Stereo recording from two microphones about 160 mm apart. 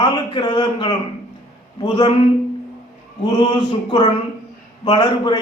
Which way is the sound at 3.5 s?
30° left (ahead or behind).